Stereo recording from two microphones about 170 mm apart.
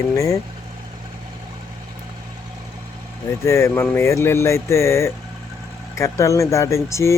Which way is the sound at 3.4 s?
15° left (ahead or behind).